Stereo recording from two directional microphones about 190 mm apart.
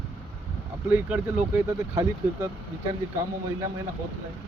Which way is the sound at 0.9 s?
10° right (ahead or behind).